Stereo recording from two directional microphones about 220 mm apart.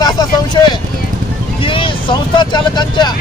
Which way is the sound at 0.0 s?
15° left (ahead or behind).